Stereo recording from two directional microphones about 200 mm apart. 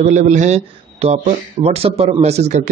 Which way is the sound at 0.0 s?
35° right (ahead or behind).